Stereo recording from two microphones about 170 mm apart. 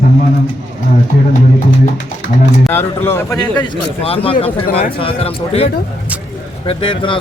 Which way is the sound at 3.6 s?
30° left (ahead or behind).